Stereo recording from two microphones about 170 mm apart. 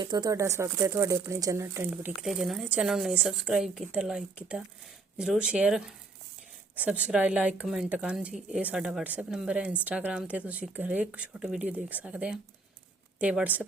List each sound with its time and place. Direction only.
0.0 s a woman's voice: 25° right (ahead or behind); by 13.7 s 10° right (ahead or behind)